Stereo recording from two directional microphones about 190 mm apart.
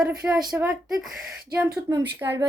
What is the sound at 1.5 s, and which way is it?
Speech, 15° right (ahead or behind).